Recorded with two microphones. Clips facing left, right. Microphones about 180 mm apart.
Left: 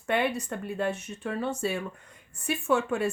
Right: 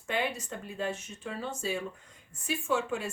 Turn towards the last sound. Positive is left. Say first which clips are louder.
# left 5 dB
turn(degrees=60)  # may be behind; listen again after turning